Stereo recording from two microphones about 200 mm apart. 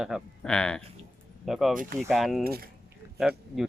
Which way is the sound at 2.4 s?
50° right (ahead or behind).